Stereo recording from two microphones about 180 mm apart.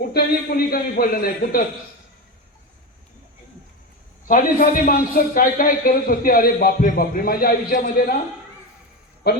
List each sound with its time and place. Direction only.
0.0 s a man's voice: 60° left (ahead or behind)
4.3 s a man's voice: 50° left (ahead or behind)